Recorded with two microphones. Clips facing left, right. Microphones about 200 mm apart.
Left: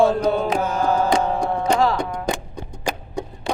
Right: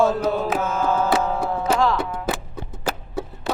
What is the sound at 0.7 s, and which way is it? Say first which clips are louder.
Music: left 1 dB; 15° left (ahead or behind).